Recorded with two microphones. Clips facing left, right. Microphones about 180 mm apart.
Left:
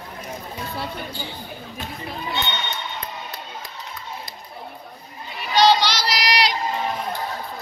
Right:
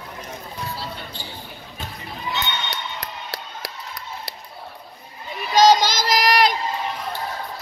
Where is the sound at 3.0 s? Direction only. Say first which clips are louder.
Even; 85° right.